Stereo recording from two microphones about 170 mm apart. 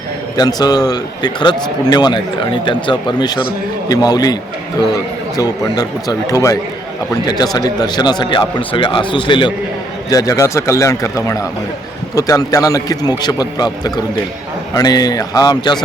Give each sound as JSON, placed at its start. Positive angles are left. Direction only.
{"t": 0.3, "sound": "a man's voice", "side_deg": 25}
{"t": 5.4, "sound": "a man's voice", "side_deg": 20}